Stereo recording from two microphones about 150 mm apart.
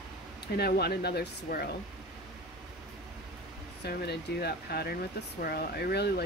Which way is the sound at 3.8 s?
90° left.